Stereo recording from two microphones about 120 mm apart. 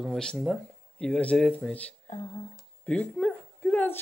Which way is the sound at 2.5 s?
10° left (ahead or behind).